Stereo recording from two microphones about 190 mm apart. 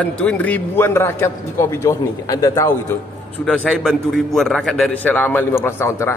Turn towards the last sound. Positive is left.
turn(degrees=15)  # may be behind; listen again after turning